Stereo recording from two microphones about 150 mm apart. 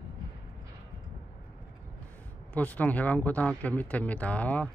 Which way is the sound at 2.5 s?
10° left (ahead or behind).